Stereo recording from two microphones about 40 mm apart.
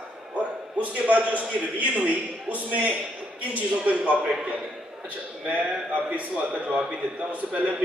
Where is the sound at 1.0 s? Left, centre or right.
Right.